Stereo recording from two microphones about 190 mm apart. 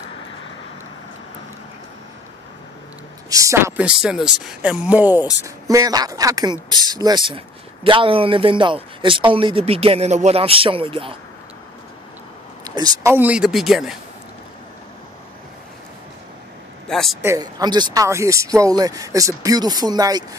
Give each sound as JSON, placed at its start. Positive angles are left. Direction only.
{"t": 3.3, "sound": "speech", "side_deg": -15}
{"t": 12.6, "sound": "speech", "side_deg": -20}
{"t": 13.1, "sound": "speech", "side_deg": -5}
{"t": 16.8, "sound": "a man's voice", "side_deg": 0}
{"t": 17.2, "sound": "speech", "side_deg": -15}